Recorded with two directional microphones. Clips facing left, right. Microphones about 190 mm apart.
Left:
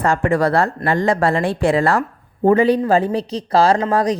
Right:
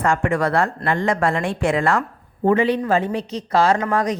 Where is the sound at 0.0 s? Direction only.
35° left (ahead or behind).